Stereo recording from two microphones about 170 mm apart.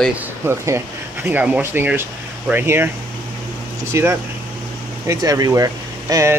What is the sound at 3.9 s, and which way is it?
Speech, 15° right (ahead or behind).